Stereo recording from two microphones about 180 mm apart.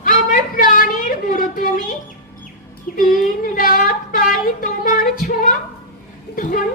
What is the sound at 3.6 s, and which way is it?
A woman's voice, 50° left (ahead or behind).